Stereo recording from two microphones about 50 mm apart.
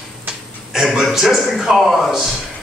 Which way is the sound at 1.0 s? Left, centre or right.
Centre.